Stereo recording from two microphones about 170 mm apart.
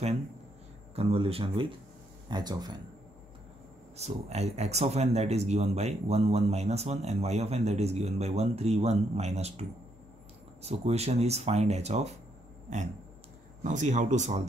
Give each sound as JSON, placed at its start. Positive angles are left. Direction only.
{"t": 0.9, "sound": "speech", "side_deg": -35}
{"t": 3.9, "sound": "speech", "side_deg": -40}